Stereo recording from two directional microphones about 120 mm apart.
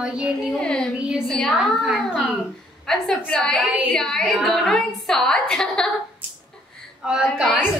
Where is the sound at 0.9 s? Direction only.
5° right (ahead or behind).